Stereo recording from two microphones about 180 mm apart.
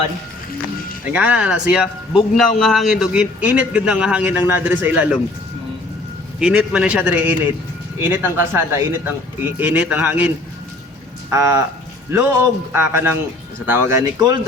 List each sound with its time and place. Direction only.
1.0 s a man's voice: 5° right (ahead or behind)
6.4 s speech: 5° right (ahead or behind)
12.7 s speech: 10° right (ahead or behind)